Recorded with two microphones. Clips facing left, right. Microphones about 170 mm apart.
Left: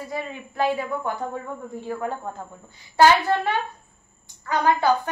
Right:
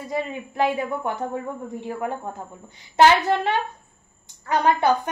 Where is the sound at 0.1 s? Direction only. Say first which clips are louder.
Right 4 dB; 20° right (ahead or behind).